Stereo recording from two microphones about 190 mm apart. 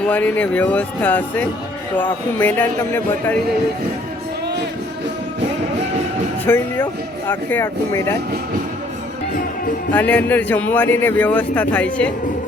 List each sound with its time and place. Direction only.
0.0 s speech: 5° left (ahead or behind)
6.4 s speech: 10° left (ahead or behind)
9.9 s speech: 10° left (ahead or behind)